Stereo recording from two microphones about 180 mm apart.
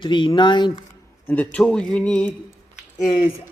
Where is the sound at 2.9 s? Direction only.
30° left (ahead or behind).